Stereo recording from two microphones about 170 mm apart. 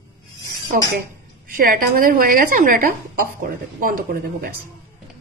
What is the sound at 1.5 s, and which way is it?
A woman's voice, 55° right (ahead or behind).